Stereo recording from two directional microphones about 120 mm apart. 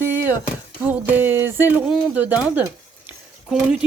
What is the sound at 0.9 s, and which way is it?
Speech, 15° right (ahead or behind).